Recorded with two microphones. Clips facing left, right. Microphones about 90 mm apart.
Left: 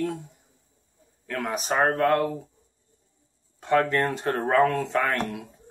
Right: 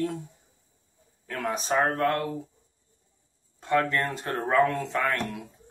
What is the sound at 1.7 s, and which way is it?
Speech, 35° left (ahead or behind).